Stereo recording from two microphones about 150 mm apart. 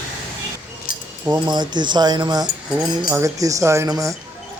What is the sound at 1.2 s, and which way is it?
Speech, 30° right (ahead or behind).